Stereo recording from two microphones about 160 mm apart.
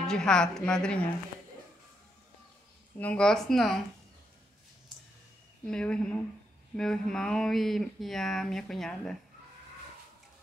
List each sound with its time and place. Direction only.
0.0 s speech: 5° left (ahead or behind)
3.0 s speech: 5° left (ahead or behind)
5.7 s speech: 5° left (ahead or behind)